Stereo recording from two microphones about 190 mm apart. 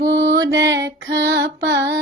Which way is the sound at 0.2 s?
70° right (ahead or behind).